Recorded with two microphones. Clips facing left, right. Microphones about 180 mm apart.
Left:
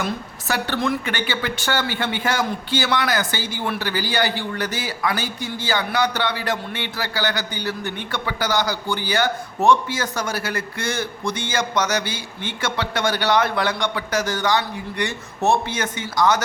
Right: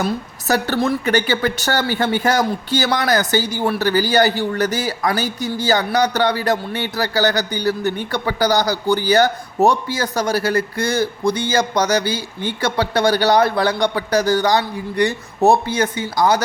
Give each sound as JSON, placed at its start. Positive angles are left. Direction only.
{"t": 0.0, "sound": "a woman's voice", "side_deg": -40}